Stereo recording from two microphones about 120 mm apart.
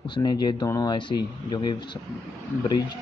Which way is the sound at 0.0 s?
40° left (ahead or behind).